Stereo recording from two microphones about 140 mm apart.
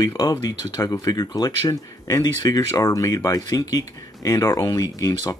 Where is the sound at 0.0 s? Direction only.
25° left (ahead or behind).